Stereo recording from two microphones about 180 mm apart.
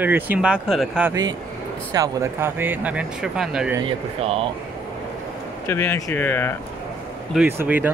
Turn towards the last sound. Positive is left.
turn(degrees=-10)  # may be behind; listen again after turning